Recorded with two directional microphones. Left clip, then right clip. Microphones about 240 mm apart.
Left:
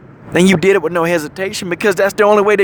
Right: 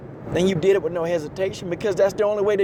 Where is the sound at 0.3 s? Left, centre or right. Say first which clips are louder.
Left 7 dB; left.